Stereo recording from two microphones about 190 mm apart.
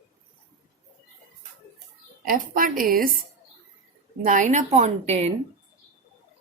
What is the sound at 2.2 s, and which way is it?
Speech, 45° right (ahead or behind).